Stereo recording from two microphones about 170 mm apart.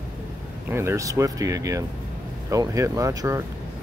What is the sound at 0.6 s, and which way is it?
Speech, 15° right (ahead or behind).